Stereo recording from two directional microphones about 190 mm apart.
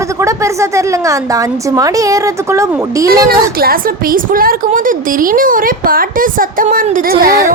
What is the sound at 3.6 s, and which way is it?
Speech, 50° right (ahead or behind).